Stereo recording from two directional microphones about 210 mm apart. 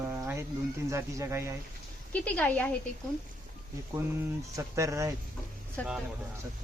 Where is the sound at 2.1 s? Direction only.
5° left (ahead or behind).